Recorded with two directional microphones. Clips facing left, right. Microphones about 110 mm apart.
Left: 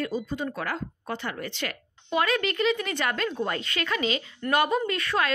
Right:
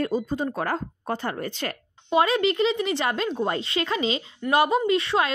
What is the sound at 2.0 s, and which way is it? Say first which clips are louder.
Speech: right 5 dB; 30° right (ahead or behind).